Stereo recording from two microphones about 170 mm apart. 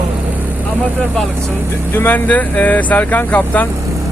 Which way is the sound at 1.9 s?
10° left (ahead or behind).